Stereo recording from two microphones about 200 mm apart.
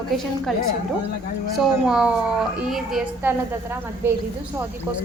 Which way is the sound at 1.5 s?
5° right (ahead or behind).